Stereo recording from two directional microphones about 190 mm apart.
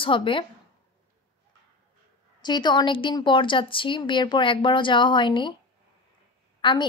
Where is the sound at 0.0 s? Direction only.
25° left (ahead or behind).